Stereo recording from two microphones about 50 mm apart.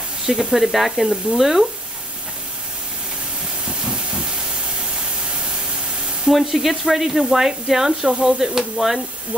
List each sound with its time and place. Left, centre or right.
0.3 s speech: centre
1.1 s speech: centre
3.6 s steam: centre
6.3 s speech: centre